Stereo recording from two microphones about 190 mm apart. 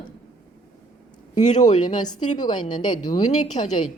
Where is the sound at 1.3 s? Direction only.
40° left (ahead or behind).